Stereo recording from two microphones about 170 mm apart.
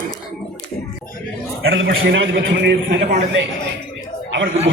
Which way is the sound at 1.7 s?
90° right.